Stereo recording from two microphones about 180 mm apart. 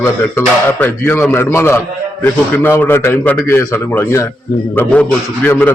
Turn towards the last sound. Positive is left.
turn(degrees=10)  # may be behind; listen again after turning